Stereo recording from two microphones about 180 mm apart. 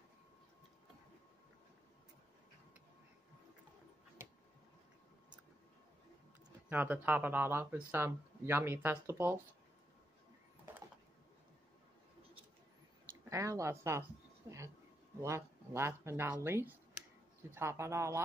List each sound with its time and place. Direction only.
6.7 s speech: 10° right (ahead or behind)
13.3 s speech: 15° right (ahead or behind)
14.5 s a sound: 15° right (ahead or behind)
15.2 s speech: 15° right (ahead or behind)